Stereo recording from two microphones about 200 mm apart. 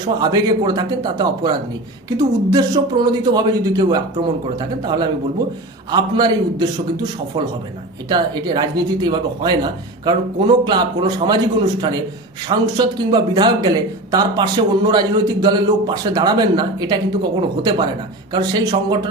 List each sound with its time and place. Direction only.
0.0 s speech: 20° right (ahead or behind)